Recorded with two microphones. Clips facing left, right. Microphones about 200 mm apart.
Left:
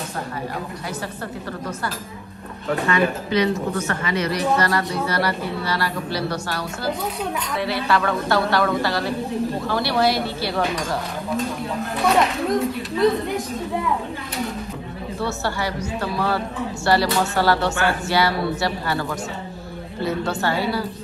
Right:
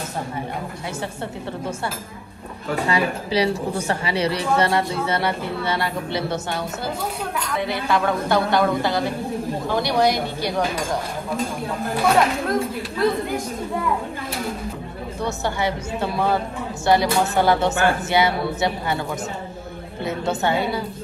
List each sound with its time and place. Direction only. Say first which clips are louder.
2.9 s a woman's voice: left 2 dB; 30° right (ahead or behind)
8.3 s a woman's voice: right 1 dB; 20° right (ahead or behind)
9.7 s speech: right 2 dB; 15° right (ahead or behind)
12.0 s speech: even; centre (ahead or behind)
15.1 s a woman's voice: right 1 dB; 20° right (ahead or behind)
20.1 s a woman's voice: right 1 dB; 20° right (ahead or behind)